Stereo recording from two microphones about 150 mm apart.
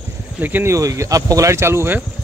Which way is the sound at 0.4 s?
15° right (ahead or behind).